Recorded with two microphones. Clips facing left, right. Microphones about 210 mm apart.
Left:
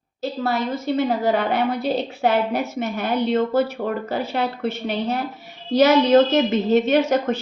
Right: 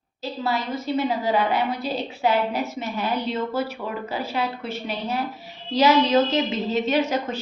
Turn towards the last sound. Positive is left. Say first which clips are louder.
# left 4 dB
turn(degrees=50)  # may be behind; listen again after turning